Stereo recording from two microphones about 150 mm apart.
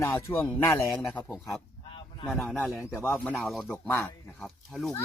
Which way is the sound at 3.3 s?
Centre (ahead or behind).